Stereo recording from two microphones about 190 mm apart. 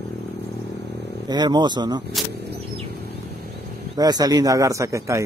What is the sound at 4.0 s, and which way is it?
A man's voice, 20° right (ahead or behind).